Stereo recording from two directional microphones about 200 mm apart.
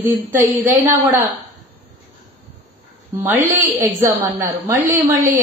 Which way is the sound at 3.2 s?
10° right (ahead or behind).